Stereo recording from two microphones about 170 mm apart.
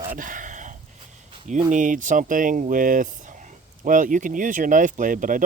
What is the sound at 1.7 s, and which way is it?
Speech, 50° right (ahead or behind).